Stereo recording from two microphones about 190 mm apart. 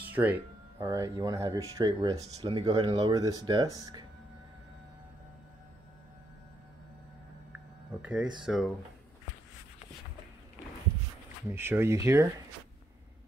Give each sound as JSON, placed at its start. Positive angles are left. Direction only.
{"t": 0.0, "sound": "speech", "side_deg": -10}
{"t": 8.0, "sound": "speech", "side_deg": -5}
{"t": 11.5, "sound": "speech", "side_deg": -10}